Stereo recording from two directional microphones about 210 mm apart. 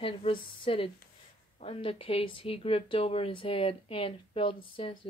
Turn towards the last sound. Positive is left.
turn(degrees=25)  # may be behind; listen again after turning